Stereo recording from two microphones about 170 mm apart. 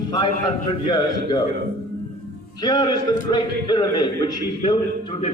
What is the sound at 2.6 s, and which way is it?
A man's voice, 25° left (ahead or behind).